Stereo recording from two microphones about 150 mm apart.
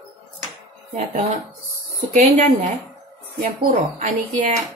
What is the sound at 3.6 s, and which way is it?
Speech, 60° right (ahead or behind).